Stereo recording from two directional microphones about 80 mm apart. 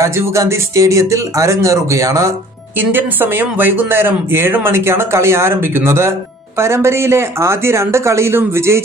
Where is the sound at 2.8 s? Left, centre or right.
Right.